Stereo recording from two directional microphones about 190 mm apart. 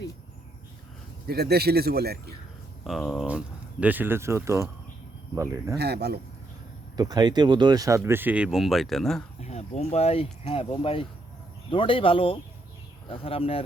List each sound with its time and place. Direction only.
1.3 s a man's voice: 55° right (ahead or behind)
2.8 s speech: centre (ahead or behind)
5.7 s a man's voice: 60° right (ahead or behind)
6.9 s speech: 20° right (ahead or behind); by 9.2 s centre (ahead or behind)
9.4 s speech: 35° left (ahead or behind)